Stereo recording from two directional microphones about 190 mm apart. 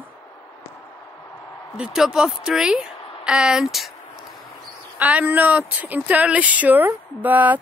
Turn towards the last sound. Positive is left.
turn(degrees=-10)  # may be behind; listen again after turning